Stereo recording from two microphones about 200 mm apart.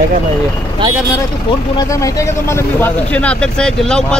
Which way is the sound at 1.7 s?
15° left (ahead or behind).